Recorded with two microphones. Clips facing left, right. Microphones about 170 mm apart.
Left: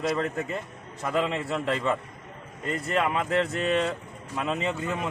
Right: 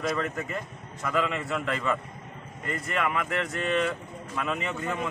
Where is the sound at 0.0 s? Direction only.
25° left (ahead or behind).